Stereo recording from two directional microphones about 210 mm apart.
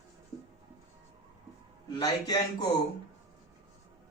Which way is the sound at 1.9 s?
20° left (ahead or behind).